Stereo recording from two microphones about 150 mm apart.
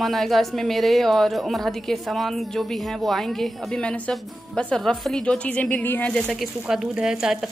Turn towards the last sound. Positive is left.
turn(degrees=-5)  # may be behind; listen again after turning